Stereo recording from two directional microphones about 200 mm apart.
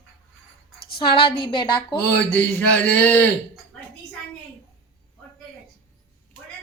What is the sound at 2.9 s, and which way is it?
Speech, 5° left (ahead or behind).